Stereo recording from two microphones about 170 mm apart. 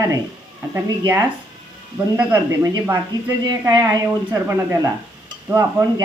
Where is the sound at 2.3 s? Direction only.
20° right (ahead or behind).